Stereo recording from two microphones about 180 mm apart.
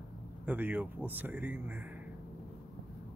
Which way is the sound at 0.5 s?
10° right (ahead or behind).